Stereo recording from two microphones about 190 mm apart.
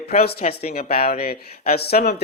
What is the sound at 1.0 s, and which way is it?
Speech, 55° left (ahead or behind).